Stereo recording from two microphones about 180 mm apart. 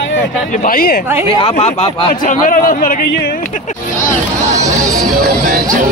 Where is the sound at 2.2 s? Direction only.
50° left (ahead or behind).